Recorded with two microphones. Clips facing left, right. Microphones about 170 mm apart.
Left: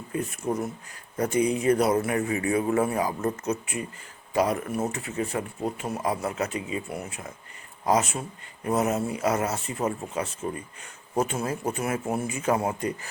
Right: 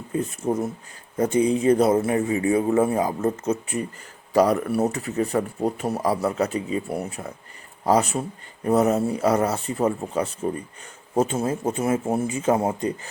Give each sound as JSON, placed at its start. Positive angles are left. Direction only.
{"t": 0.1, "sound": "a man's voice", "side_deg": -30}